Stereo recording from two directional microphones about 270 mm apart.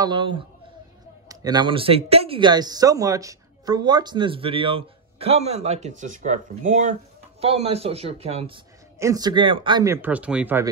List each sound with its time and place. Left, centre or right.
0.0 s speech: centre